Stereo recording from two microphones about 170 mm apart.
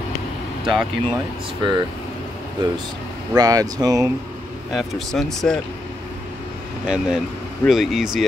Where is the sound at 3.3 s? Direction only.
20° right (ahead or behind).